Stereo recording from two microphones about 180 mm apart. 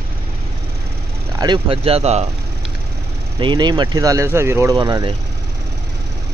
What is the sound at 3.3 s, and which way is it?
Speech, 25° right (ahead or behind).